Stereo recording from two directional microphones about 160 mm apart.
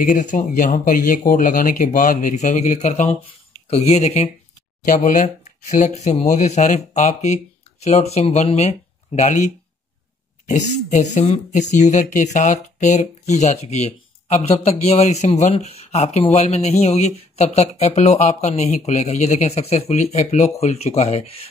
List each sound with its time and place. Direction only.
0.0 s speech: 50° left (ahead or behind)
4.8 s speech: 55° left (ahead or behind)
10.5 s speech: 45° left (ahead or behind)